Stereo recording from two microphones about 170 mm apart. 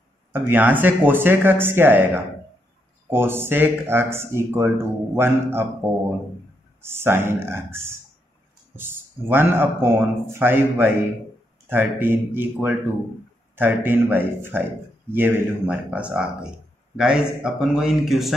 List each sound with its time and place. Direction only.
0.3 s a man's voice: 10° right (ahead or behind)